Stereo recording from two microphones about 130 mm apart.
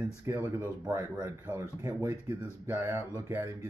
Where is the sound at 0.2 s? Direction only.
25° right (ahead or behind).